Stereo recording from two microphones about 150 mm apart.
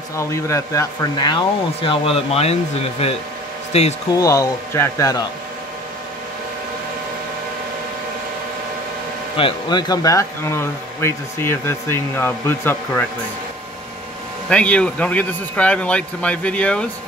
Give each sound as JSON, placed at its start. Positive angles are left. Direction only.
{"t": 0.1, "sound": "speech", "side_deg": 20}
{"t": 4.1, "sound": "speech", "side_deg": 20}
{"t": 9.4, "sound": "speech", "side_deg": 30}
{"t": 14.5, "sound": "speech", "side_deg": 10}